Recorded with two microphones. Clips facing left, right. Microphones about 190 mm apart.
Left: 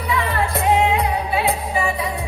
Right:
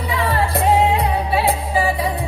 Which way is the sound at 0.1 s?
30° right (ahead or behind).